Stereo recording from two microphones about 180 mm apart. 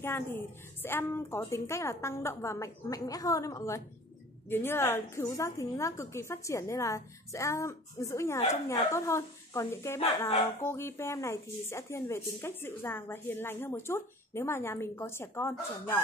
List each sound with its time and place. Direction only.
0.0 s speech: 10° left (ahead or behind)